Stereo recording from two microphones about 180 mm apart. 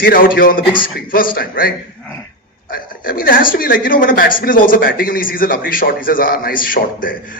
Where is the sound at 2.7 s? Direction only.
55° left (ahead or behind).